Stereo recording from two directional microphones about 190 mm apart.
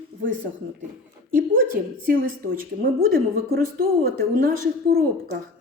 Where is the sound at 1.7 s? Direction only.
45° right (ahead or behind).